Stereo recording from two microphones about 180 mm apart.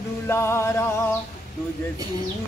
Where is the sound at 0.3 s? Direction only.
15° left (ahead or behind).